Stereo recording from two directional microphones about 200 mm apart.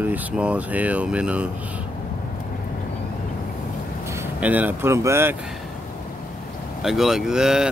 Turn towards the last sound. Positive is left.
turn(degrees=-5)  # may be behind; listen again after turning